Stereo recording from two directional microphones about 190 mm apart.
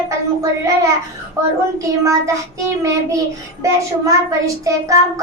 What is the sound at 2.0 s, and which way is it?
Child singing, 15° right (ahead or behind).